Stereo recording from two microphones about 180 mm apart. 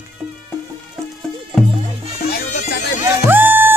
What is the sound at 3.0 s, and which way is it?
Music, 10° right (ahead or behind).